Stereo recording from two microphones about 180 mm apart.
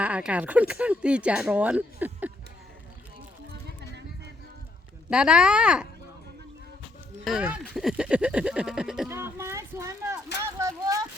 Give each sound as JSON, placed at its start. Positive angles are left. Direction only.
{"t": 0.0, "sound": "speech", "side_deg": -5}
{"t": 5.0, "sound": "speech", "side_deg": -5}
{"t": 7.3, "sound": "speech", "side_deg": -5}
{"t": 9.0, "sound": "speech", "side_deg": -15}
{"t": 10.4, "sound": "a sound", "side_deg": -20}